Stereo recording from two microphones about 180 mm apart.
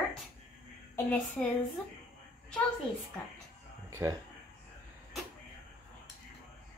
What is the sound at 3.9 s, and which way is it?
Speech, 15° right (ahead or behind).